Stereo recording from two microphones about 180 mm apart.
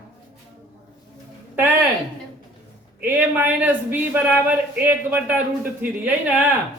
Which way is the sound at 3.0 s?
10° right (ahead or behind).